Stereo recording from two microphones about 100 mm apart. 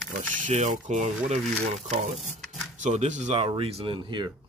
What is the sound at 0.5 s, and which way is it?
Speech, 90° right.